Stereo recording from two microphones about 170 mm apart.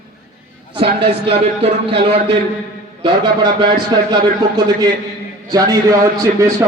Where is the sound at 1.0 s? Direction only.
35° right (ahead or behind).